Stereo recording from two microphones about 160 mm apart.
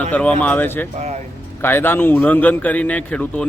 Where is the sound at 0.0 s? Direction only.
10° left (ahead or behind).